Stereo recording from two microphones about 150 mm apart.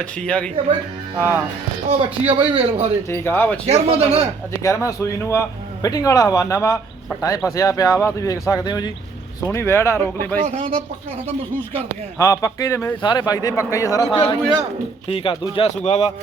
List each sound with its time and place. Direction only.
0.0 s speech: 5° left (ahead or behind)
1.1 s speech: 20° right (ahead or behind)
1.9 s a man's voice: 40° right (ahead or behind)
3.1 s speech: 15° left (ahead or behind)
3.7 s a man's voice: 40° right (ahead or behind)
4.6 s a man's voice: 20° left (ahead or behind)
9.5 s speech: 15° left (ahead or behind)
10.4 s speech: 45° right (ahead or behind)
12.2 s a man's voice: 20° left (ahead or behind)
13.0 s a man's voice: 30° left (ahead or behind)
15.1 s speech: 35° left (ahead or behind)
15.7 s a man's voice: 50° left (ahead or behind)